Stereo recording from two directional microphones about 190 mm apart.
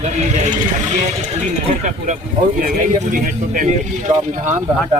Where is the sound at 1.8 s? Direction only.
40° right (ahead or behind).